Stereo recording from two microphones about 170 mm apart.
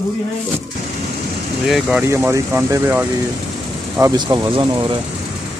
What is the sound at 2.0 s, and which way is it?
Speech, 15° right (ahead or behind).